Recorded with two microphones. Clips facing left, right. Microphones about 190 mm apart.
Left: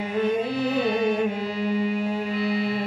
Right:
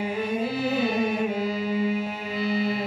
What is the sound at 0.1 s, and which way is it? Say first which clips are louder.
Music: left 3 dB; 5° right (ahead or behind).